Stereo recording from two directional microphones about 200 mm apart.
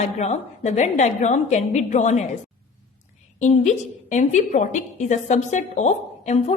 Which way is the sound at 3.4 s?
35° left (ahead or behind).